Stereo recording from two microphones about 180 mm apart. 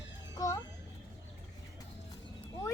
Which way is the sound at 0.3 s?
20° left (ahead or behind).